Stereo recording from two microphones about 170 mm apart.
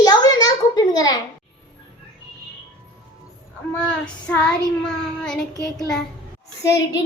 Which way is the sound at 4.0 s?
5° left (ahead or behind).